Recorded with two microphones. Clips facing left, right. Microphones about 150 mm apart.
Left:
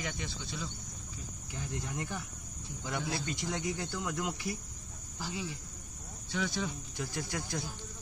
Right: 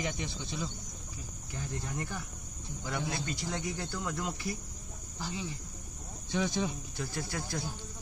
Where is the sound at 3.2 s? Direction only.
20° left (ahead or behind).